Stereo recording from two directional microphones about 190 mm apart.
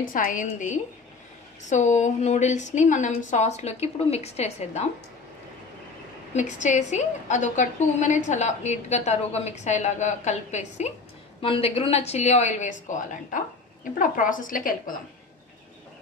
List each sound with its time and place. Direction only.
0.0 s a woman's voice: 45° left (ahead or behind)
6.3 s a woman's voice: 40° left (ahead or behind)